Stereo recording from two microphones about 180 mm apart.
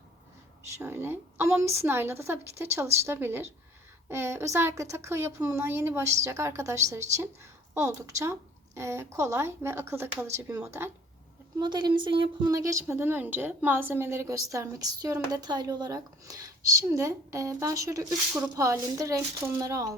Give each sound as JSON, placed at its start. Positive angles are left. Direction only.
{"t": 0.7, "sound": "speech", "side_deg": -15}